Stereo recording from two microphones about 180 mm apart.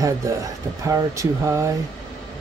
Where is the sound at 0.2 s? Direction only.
15° right (ahead or behind).